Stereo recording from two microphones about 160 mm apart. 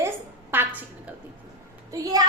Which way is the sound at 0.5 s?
10° right (ahead or behind).